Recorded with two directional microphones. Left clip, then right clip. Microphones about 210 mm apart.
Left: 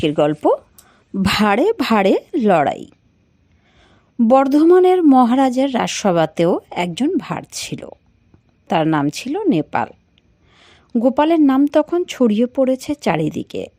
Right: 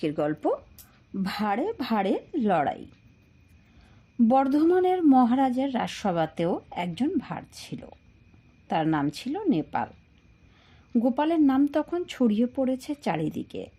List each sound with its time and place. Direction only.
0.0 s a woman's voice: 30° left (ahead or behind)
4.2 s speech: 30° left (ahead or behind)